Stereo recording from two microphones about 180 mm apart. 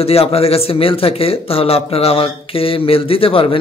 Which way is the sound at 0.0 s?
35° left (ahead or behind).